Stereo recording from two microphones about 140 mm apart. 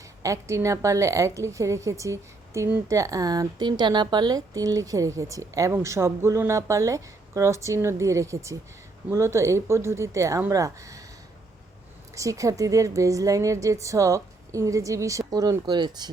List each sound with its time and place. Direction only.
0.2 s a woman's voice: 20° right (ahead or behind)
12.1 s a woman's voice: 25° right (ahead or behind)